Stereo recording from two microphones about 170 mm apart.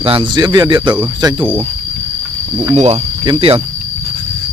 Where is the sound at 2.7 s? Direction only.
40° right (ahead or behind).